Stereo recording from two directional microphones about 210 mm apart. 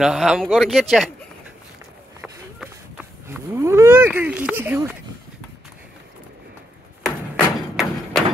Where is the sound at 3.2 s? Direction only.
10° right (ahead or behind).